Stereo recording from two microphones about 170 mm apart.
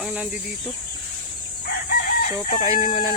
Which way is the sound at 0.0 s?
5° right (ahead or behind).